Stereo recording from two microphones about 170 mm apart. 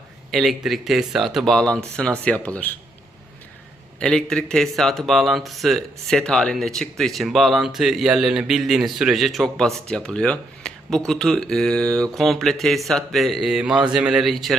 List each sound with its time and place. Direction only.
0.3 s speech: centre (ahead or behind)
4.0 s speech: 5° left (ahead or behind)